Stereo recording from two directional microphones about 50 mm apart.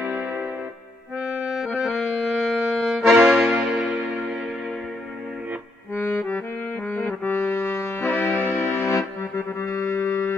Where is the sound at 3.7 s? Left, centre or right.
Right.